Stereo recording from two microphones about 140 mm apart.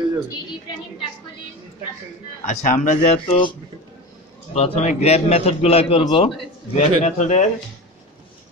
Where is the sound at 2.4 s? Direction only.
65° left (ahead or behind).